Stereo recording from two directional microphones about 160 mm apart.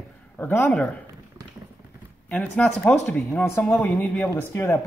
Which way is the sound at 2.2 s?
10° left (ahead or behind).